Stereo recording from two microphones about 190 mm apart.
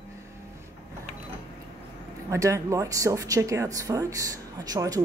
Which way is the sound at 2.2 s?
15° right (ahead or behind).